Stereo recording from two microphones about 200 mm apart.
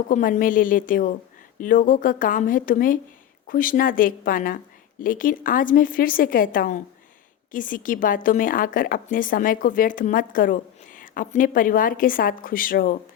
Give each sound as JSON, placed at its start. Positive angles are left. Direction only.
{"t": 0.1, "sound": "speech", "side_deg": 40}